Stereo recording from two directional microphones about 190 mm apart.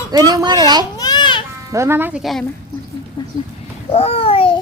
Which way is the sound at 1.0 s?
20° left (ahead or behind).